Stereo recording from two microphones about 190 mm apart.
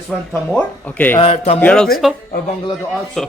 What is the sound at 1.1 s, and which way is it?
Speech, 30° left (ahead or behind).